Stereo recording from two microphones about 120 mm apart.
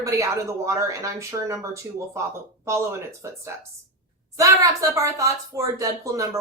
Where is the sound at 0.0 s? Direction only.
25° right (ahead or behind).